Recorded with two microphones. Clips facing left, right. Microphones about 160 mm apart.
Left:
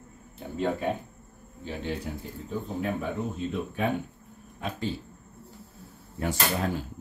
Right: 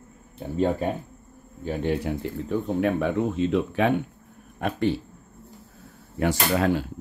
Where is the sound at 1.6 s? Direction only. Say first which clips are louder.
Right 7 dB; 55° right (ahead or behind); by 3.9 s 90° right.